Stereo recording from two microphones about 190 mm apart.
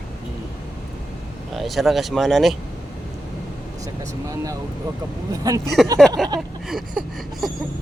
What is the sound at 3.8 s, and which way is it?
Speech, 15° right (ahead or behind).